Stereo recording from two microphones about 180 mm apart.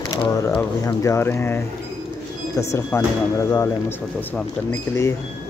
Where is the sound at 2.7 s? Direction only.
15° left (ahead or behind).